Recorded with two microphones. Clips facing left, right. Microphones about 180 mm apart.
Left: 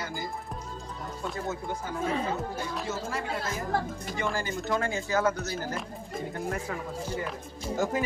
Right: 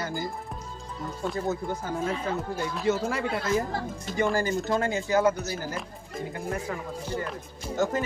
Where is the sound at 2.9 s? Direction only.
65° right (ahead or behind).